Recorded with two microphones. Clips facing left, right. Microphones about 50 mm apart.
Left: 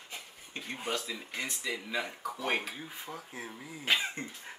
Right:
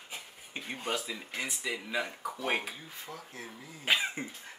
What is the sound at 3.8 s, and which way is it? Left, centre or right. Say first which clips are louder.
Speech: right 1 dB; centre.